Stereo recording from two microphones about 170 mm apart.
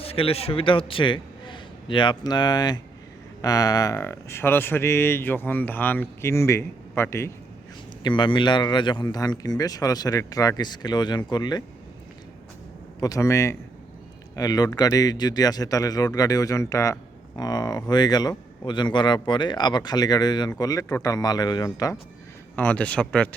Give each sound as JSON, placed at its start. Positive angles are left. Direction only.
{"t": 0.0, "sound": "a man's voice", "side_deg": 35}
{"t": 8.0, "sound": "a man's voice", "side_deg": 30}
{"t": 13.0, "sound": "a man's voice", "side_deg": 20}
{"t": 22.5, "sound": "speech", "side_deg": 10}